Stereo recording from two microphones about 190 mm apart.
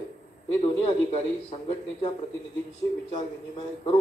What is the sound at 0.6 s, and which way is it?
A man's voice, 30° left (ahead or behind).